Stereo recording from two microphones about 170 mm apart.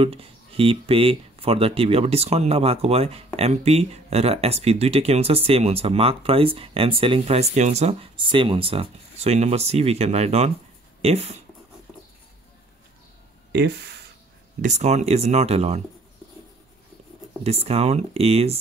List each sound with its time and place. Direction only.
0.0 s speech: 35° right (ahead or behind)
13.5 s speech: 75° right (ahead or behind)
14.6 s speech: 45° right (ahead or behind)
17.4 s speech: 35° right (ahead or behind)